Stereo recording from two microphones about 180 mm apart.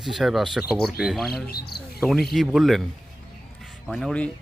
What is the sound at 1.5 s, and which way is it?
Speech, 60° left (ahead or behind).